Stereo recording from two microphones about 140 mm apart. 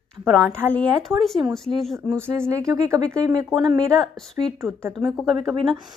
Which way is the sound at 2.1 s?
20° right (ahead or behind).